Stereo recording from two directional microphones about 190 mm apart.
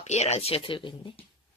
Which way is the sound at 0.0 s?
35° left (ahead or behind).